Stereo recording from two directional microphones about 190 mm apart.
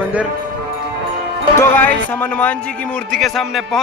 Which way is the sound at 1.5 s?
10° left (ahead or behind).